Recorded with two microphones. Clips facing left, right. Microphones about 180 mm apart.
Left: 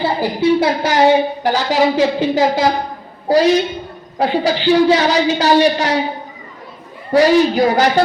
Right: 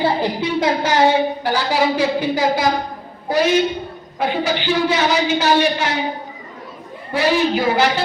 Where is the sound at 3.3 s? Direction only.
35° left (ahead or behind).